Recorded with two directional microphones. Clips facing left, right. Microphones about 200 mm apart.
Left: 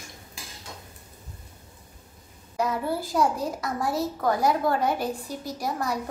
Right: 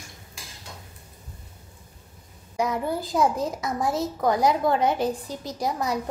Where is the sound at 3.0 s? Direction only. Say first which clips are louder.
Right 2 dB; 20° right (ahead or behind).